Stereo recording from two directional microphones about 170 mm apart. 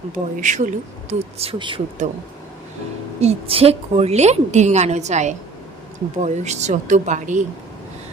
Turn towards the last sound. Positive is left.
turn(degrees=-45)  # may be behind; listen again after turning